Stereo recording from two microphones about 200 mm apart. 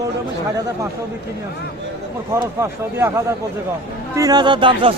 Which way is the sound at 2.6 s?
15° right (ahead or behind).